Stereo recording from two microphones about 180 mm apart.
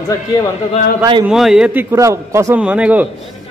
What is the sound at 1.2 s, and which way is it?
A man's voice, 5° right (ahead or behind).